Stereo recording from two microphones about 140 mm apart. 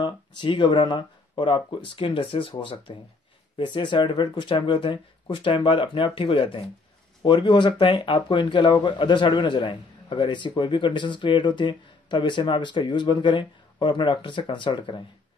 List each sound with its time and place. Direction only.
0.0 s speech: 35° left (ahead or behind)